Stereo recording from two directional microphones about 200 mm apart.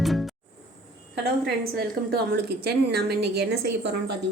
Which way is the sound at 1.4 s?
50° right (ahead or behind).